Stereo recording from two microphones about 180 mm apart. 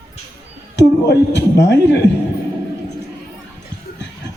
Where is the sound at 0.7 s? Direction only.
75° left (ahead or behind).